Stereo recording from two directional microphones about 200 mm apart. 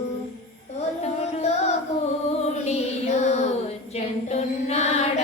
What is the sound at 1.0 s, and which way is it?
Music, 35° left (ahead or behind).